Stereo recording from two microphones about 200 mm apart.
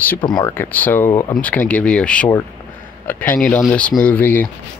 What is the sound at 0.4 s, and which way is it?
Speech, 10° left (ahead or behind).